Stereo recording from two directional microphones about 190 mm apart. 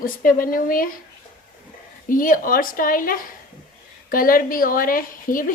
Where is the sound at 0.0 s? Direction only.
45° left (ahead or behind).